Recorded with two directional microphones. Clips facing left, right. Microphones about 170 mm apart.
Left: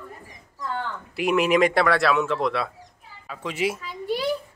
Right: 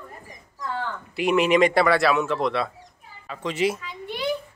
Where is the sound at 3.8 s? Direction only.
35° left (ahead or behind).